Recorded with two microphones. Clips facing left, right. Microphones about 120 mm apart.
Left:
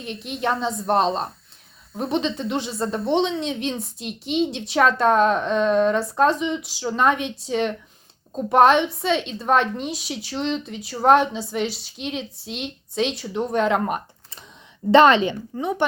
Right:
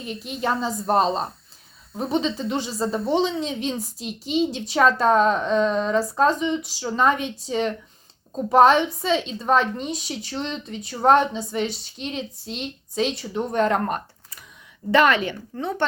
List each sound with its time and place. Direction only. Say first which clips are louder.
0.0 s speech: left 1 dB; centre (ahead or behind)
14.8 s a woman's voice: left 4 dB; 25° left (ahead or behind)
15.5 s speech: even; 15° left (ahead or behind)